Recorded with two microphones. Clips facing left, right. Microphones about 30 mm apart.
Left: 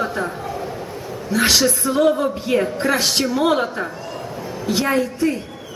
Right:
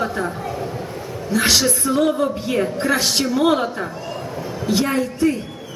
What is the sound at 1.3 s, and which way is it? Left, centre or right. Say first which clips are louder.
A woman's voice: left 1 dB; centre.